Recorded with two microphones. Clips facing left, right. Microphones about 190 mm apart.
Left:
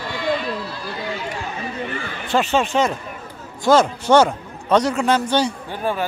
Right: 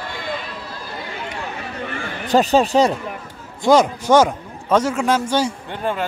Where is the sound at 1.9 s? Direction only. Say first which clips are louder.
Right 5 dB; 40° right (ahead or behind).